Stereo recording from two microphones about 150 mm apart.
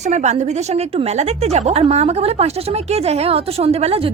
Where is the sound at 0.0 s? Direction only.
50° right (ahead or behind).